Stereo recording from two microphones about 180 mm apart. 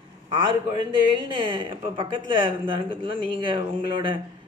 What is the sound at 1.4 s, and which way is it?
Speech, 30° right (ahead or behind).